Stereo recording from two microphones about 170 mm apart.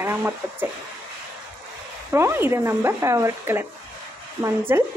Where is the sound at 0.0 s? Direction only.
15° right (ahead or behind).